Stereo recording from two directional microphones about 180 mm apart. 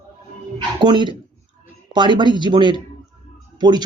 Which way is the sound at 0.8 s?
25° right (ahead or behind).